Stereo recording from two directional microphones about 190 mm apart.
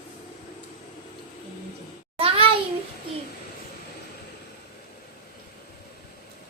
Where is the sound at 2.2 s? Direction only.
30° right (ahead or behind).